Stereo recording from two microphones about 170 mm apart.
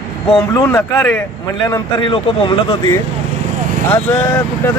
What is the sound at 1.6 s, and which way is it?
Speech, 25° left (ahead or behind).